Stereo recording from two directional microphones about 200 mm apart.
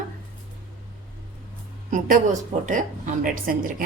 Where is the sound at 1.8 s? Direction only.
40° right (ahead or behind).